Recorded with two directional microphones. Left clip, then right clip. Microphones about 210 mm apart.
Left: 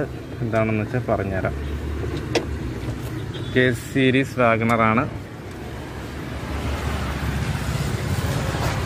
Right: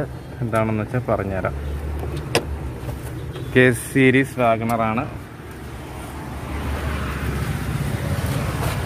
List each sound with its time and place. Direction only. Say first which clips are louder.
0.5 s speech: even; 5° right (ahead or behind)
3.5 s speech: right 4 dB; 15° right (ahead or behind)
4.4 s speech: left 1 dB; 10° left (ahead or behind)